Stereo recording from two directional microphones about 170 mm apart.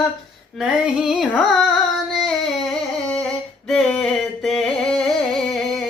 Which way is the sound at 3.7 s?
5° left (ahead or behind).